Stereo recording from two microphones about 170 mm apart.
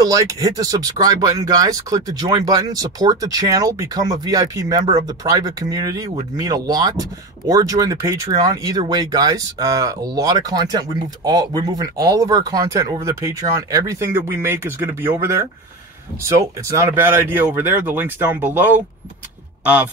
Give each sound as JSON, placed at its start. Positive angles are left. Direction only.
{"t": 0.0, "sound": "speech", "side_deg": -20}
{"t": 16.2, "sound": "speech", "side_deg": -20}